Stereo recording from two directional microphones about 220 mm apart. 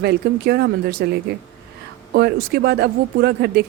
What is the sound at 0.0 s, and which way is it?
Speech, 45° right (ahead or behind).